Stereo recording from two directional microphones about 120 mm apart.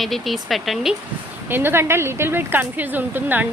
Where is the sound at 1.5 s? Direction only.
20° right (ahead or behind).